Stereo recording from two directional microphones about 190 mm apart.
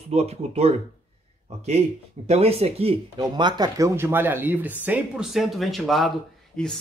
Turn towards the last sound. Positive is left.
turn(degrees=0)  # may be behind; listen again after turning